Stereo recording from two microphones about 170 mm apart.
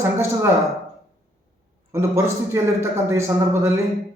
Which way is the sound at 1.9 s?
15° right (ahead or behind).